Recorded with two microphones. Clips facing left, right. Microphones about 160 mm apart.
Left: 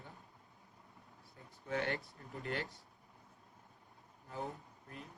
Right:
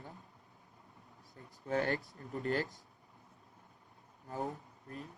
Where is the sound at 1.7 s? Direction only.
40° right (ahead or behind).